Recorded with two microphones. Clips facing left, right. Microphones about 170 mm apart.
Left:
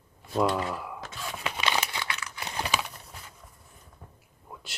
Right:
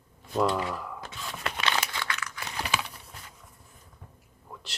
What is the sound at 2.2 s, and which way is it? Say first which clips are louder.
Typing: even; 25° left (ahead or behind).